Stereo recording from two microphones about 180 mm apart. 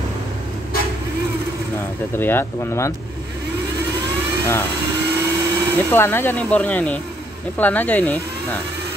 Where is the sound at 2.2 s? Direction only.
10° left (ahead or behind).